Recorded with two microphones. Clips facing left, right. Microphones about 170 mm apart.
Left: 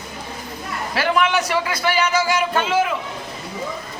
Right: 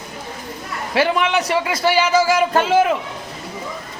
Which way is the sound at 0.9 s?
20° right (ahead or behind).